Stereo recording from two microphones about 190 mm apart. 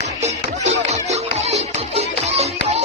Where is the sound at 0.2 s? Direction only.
35° right (ahead or behind).